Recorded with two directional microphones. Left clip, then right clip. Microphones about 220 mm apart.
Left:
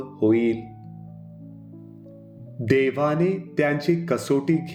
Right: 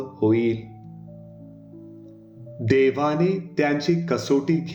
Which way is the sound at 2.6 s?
35° left (ahead or behind).